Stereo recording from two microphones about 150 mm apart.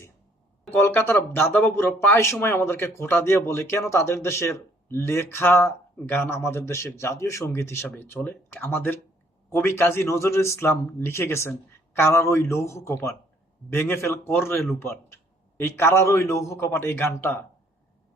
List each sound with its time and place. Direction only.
0.7 s a man's voice: 15° left (ahead or behind)